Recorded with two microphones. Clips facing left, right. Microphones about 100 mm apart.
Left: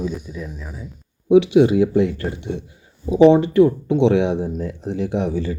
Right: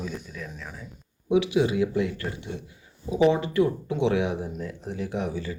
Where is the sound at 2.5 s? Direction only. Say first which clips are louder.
Left 8 dB; 55° left (ahead or behind).